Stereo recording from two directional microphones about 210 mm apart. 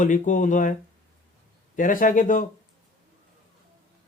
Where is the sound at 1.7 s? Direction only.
40° left (ahead or behind).